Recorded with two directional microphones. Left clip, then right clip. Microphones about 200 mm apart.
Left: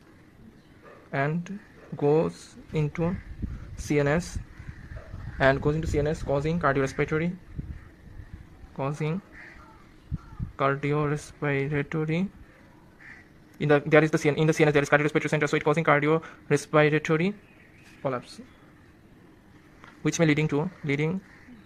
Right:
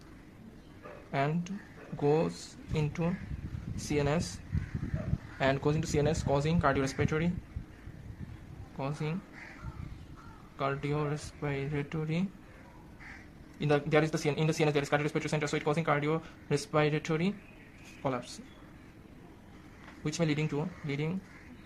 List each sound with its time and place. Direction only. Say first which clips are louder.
1.1 s speech: left 4 dB; 25° left (ahead or behind)
5.4 s speech: left 7 dB; 30° left (ahead or behind)
8.8 s speech: left 6 dB; 25° left (ahead or behind)
10.6 s speech: left 7 dB; 25° left (ahead or behind)
13.6 s speech: left 8 dB; 30° left (ahead or behind)
20.1 s speech: left 9 dB; 35° left (ahead or behind)